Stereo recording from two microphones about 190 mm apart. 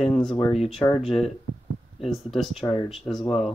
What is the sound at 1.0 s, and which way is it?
Speech, centre (ahead or behind).